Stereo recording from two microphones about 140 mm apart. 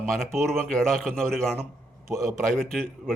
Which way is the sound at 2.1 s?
20° right (ahead or behind).